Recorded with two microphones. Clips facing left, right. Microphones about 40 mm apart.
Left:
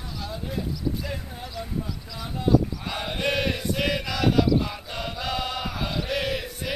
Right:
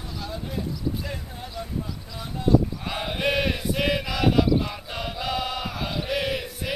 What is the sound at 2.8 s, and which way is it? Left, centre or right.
Chant, centre.